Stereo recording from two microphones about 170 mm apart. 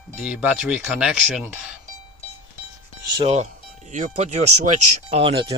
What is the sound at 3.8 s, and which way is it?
Speech, 45° right (ahead or behind).